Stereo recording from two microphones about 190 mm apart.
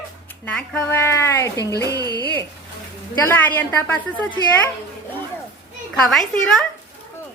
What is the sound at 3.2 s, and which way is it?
A child's voice, 10° left (ahead or behind).